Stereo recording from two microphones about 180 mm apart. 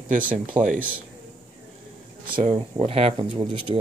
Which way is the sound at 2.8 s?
35° right (ahead or behind).